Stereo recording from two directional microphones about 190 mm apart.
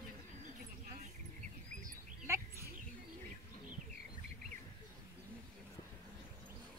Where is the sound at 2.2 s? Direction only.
15° right (ahead or behind).